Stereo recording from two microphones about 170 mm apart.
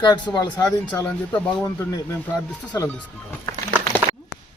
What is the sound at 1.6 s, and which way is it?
Speech, 20° left (ahead or behind).